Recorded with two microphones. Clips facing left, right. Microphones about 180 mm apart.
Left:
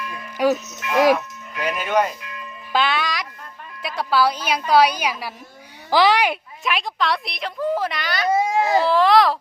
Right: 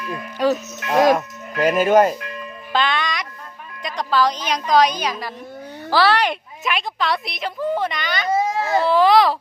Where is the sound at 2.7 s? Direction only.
5° left (ahead or behind).